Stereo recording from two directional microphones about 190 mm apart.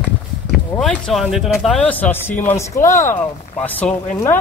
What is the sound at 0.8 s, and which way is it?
Speech, centre (ahead or behind).